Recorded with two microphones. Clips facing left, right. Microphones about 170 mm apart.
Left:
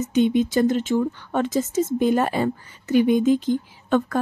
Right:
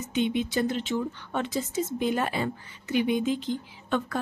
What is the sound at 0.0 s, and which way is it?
A woman's voice, 40° left (ahead or behind).